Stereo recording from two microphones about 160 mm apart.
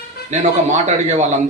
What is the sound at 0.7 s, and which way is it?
Speech, 45° right (ahead or behind).